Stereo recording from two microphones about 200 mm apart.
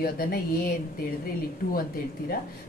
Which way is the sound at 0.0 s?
50° left (ahead or behind).